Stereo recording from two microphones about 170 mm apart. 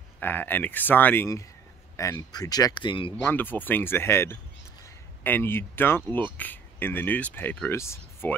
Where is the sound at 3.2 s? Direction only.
10° left (ahead or behind).